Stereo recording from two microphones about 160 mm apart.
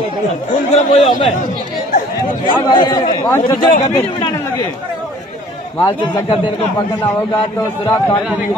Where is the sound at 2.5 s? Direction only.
30° left (ahead or behind).